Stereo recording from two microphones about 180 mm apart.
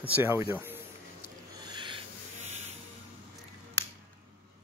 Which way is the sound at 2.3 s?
40° right (ahead or behind).